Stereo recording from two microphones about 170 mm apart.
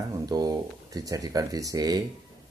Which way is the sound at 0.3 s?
20° right (ahead or behind).